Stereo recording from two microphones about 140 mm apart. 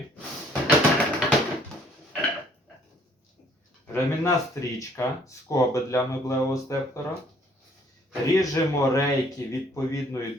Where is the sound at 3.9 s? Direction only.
20° left (ahead or behind).